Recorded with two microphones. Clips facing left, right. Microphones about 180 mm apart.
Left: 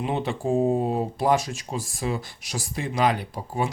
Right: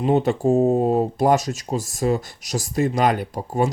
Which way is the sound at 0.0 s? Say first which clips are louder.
Right 8 dB; 45° right (ahead or behind).